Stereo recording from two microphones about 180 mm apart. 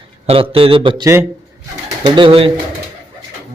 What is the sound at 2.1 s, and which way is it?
Speech, 25° right (ahead or behind).